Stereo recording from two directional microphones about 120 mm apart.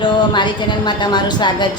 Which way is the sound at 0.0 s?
40° left (ahead or behind).